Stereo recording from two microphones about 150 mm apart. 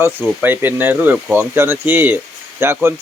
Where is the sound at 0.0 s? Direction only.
15° right (ahead or behind).